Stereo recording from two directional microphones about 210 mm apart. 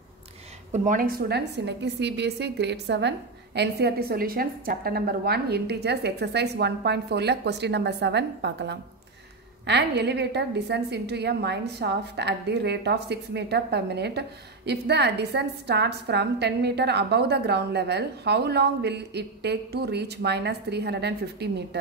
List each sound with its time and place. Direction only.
0.7 s a woman's voice: 35° right (ahead or behind); by 21.6 s 55° right (ahead or behind)